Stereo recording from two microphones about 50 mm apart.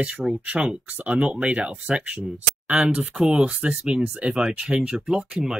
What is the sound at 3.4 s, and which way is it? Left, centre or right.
Speech, right.